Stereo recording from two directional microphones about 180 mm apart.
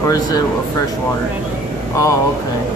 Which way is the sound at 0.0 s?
20° left (ahead or behind).